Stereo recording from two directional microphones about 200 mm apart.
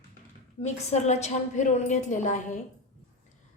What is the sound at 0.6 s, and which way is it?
A woman's voice, 35° left (ahead or behind).